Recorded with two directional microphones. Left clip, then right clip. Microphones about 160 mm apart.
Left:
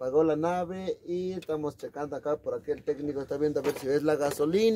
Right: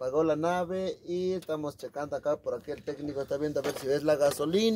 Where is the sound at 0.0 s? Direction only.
20° left (ahead or behind).